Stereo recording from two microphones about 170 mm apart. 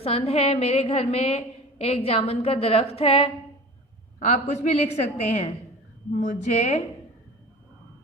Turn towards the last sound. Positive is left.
turn(degrees=45)  # may be behind; listen again after turning